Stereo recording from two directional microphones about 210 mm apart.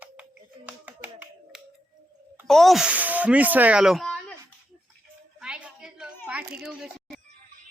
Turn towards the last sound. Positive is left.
turn(degrees=-5)  # may be behind; listen again after turning